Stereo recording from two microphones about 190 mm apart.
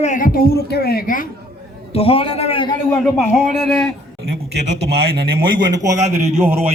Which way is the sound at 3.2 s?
Centre (ahead or behind).